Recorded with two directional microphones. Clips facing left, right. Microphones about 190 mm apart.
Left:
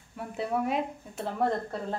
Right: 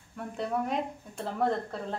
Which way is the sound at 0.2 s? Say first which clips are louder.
Left 2 dB; 5° left (ahead or behind).